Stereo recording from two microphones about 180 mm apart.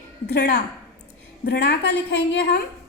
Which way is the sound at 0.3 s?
60° left (ahead or behind).